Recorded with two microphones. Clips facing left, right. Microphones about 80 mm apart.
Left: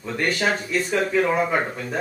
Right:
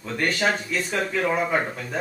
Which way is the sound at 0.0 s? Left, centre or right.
Centre.